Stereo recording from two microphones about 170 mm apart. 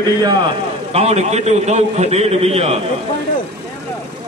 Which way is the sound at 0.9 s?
40° right (ahead or behind).